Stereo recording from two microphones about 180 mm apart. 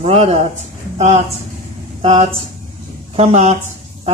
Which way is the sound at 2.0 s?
40° right (ahead or behind).